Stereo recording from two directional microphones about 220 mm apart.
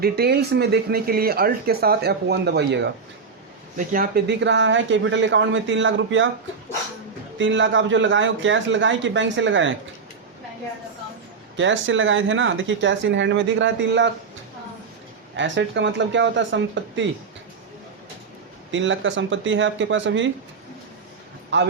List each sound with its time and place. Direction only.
0.0 s speech: 45° right (ahead or behind)
7.3 s speech: 55° right (ahead or behind)
11.5 s speech: 60° right (ahead or behind)
15.4 s speech: 55° right (ahead or behind)
18.7 s speech: 60° right (ahead or behind)
21.5 s speech: 55° right (ahead or behind)